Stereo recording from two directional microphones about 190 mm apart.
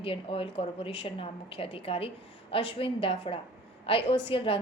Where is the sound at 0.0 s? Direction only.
30° left (ahead or behind).